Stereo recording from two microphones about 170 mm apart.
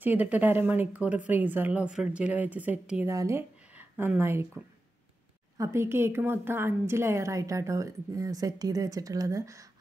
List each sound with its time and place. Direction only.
0.0 s speech: 10° right (ahead or behind)